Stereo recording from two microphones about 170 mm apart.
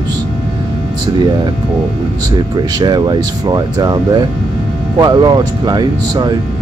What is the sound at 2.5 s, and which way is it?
Speech, 25° right (ahead or behind).